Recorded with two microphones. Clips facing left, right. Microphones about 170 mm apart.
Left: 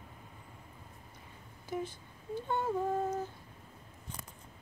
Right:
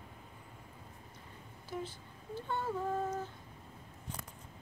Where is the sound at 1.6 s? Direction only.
15° left (ahead or behind).